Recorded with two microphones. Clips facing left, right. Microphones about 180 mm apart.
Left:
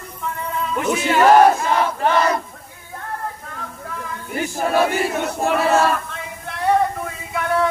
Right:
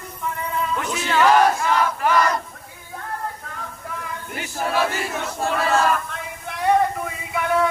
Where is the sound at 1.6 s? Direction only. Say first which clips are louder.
Left 2 dB; 25° left (ahead or behind).